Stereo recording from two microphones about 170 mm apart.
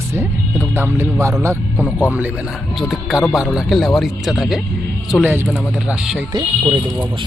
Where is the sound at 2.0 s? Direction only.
10° right (ahead or behind).